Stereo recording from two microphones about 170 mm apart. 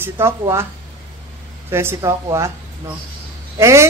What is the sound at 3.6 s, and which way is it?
Speech, 15° right (ahead or behind).